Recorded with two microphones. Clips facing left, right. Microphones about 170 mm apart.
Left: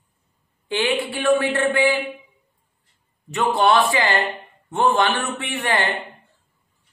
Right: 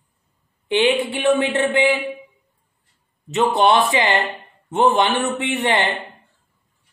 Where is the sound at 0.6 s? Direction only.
20° right (ahead or behind).